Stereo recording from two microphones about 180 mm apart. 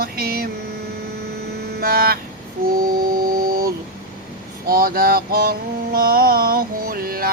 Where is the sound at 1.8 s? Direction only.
60° right (ahead or behind).